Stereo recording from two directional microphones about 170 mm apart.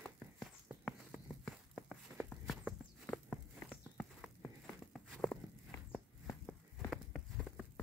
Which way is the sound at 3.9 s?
10° left (ahead or behind).